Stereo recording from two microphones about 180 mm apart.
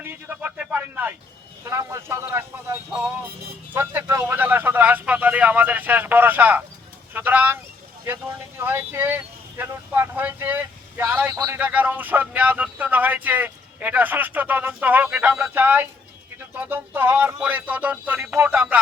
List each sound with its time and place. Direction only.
0.0 s speech: 10° right (ahead or behind)
11.6 s speech: 10° right (ahead or behind)